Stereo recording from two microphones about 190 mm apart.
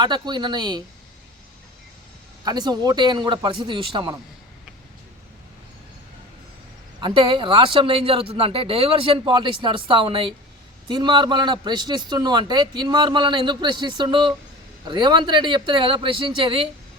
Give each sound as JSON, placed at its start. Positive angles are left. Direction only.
{"t": 0.0, "sound": "a man's voice", "side_deg": -25}
{"t": 2.4, "sound": "a man's voice", "side_deg": -20}
{"t": 7.0, "sound": "a man's voice", "side_deg": -25}